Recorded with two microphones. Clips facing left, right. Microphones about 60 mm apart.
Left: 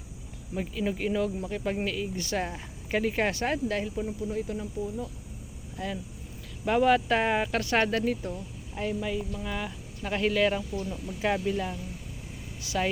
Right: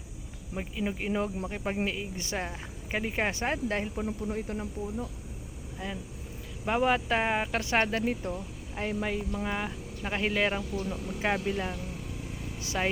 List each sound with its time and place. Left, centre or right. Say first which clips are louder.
0.5 s speech: left 3 dB; centre
1.1 s speech: left 2 dB; right
2.4 s speech: left 3 dB; centre; by 5.0 s right
5.7 s speech: left 3 dB; centre
10.8 s speech: right 1 dB; right
11.4 s speech: left 2 dB; right
12.6 s vehicle: left 2 dB; right